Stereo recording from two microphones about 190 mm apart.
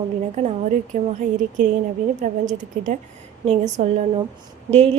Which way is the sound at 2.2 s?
40° right (ahead or behind).